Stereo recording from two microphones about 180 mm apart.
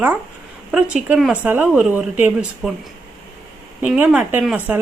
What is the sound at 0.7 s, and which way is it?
Speech, 5° right (ahead or behind).